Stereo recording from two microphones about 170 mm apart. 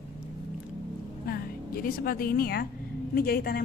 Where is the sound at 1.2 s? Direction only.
60° left (ahead or behind).